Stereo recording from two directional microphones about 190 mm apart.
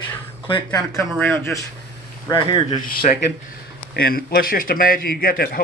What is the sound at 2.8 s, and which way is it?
A man's voice, 45° left (ahead or behind).